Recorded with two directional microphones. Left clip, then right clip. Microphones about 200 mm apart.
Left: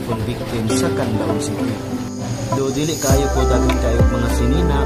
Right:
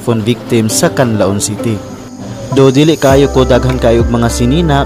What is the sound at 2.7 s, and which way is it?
Speech, 40° right (ahead or behind).